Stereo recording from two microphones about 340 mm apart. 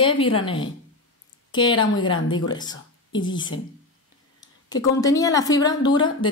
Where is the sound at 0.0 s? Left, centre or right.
Centre.